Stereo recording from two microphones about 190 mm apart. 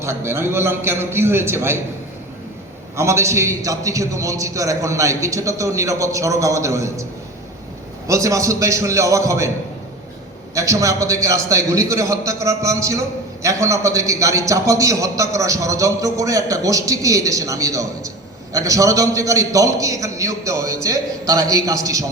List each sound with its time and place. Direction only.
0.0 s a man's voice: 15° right (ahead or behind)
2.9 s a man's voice: 15° right (ahead or behind)
10.5 s a man's voice: 15° right (ahead or behind)